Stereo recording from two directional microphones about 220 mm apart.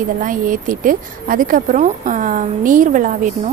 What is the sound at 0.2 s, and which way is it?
Speech, 35° right (ahead or behind).